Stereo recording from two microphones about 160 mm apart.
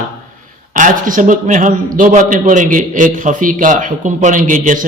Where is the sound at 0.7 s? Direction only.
55° right (ahead or behind).